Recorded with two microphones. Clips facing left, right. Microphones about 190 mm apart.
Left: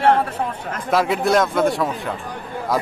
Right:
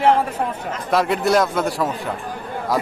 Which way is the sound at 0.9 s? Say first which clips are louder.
Even; centre (ahead or behind).